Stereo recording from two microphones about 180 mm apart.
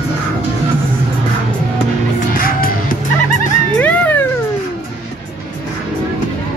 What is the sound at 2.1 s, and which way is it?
Music, 50° left (ahead or behind).